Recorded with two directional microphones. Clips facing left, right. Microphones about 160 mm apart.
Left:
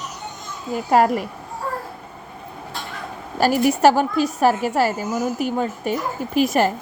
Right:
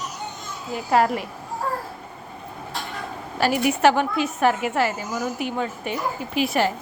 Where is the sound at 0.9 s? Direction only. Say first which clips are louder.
Left 3 dB; 45° left (ahead or behind).